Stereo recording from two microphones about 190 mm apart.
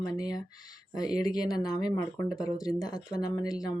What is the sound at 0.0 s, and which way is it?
Speech, 20° left (ahead or behind).